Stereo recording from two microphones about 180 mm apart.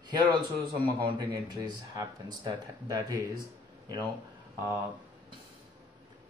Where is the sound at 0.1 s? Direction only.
25° right (ahead or behind).